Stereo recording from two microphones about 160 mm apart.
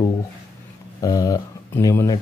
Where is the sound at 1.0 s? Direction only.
20° left (ahead or behind).